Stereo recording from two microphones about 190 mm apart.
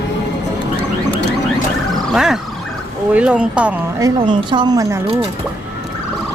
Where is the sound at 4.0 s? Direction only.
25° right (ahead or behind).